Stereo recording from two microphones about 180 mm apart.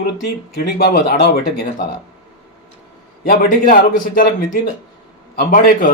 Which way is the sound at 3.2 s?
55° left (ahead or behind).